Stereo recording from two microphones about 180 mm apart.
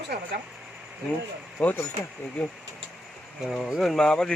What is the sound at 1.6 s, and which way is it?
Speech, 10° left (ahead or behind).